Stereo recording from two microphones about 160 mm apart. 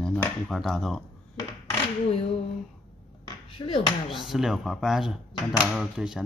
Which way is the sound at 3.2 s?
35° left (ahead or behind).